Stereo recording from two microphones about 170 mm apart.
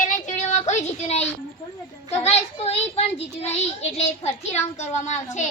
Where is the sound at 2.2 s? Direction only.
40° left (ahead or behind).